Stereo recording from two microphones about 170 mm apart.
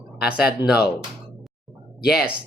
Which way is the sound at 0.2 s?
5° right (ahead or behind).